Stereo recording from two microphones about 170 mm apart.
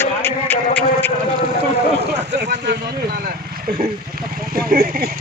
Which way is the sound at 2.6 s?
80° right.